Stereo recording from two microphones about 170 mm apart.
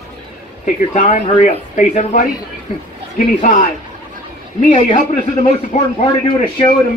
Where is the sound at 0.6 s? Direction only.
45° left (ahead or behind).